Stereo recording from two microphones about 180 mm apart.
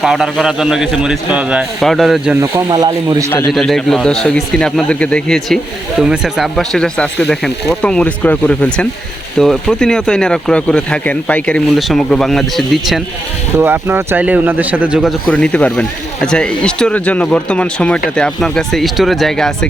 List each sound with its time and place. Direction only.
0.0 s a man's voice: centre (ahead or behind)
2.4 s speech: 20° right (ahead or behind)
3.2 s speech: 15° left (ahead or behind)
3.5 s a man's voice: centre (ahead or behind)
13.6 s a man's voice: 10° right (ahead or behind)